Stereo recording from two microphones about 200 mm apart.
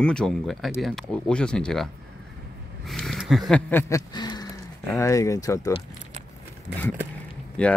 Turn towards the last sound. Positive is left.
turn(degrees=5)  # may be behind; listen again after turning